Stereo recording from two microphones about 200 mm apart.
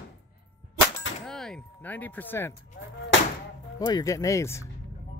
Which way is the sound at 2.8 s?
60° left (ahead or behind).